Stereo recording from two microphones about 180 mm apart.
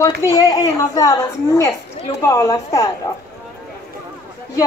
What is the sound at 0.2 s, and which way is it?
A woman's voice, 20° left (ahead or behind).